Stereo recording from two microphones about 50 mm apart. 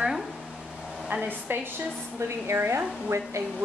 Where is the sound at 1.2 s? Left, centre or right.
Right.